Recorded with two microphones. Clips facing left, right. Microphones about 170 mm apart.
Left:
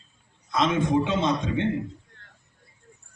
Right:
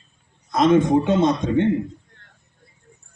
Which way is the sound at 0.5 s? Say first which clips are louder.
Right 7 dB; 50° right (ahead or behind).